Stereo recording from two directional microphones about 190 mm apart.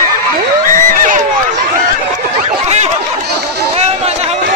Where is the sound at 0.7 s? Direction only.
40° right (ahead or behind).